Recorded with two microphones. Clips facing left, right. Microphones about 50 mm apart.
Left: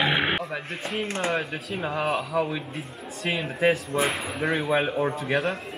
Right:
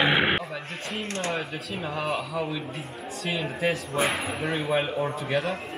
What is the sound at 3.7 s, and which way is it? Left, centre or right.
Speech, centre.